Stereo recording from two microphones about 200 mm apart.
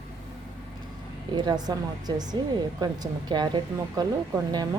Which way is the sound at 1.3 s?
20° right (ahead or behind).